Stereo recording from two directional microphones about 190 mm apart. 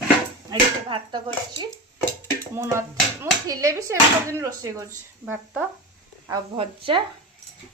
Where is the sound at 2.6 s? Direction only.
15° right (ahead or behind).